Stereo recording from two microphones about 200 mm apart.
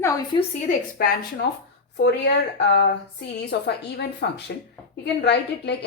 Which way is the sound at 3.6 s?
60° left (ahead or behind).